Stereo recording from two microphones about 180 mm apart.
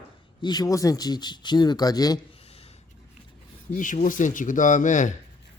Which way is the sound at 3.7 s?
45° left (ahead or behind).